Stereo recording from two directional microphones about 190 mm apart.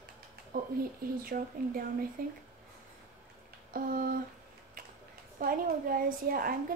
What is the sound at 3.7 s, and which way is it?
Speech, 50° right (ahead or behind).